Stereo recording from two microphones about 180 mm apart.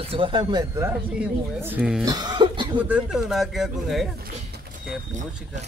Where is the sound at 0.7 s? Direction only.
15° right (ahead or behind).